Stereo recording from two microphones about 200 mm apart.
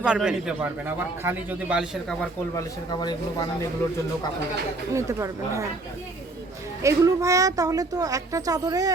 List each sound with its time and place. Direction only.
0.0 s speech: 5° right (ahead or behind)
2.6 s speech: 20° left (ahead or behind)
4.9 s speech: 15° right (ahead or behind)
6.8 s speech: 15° right (ahead or behind)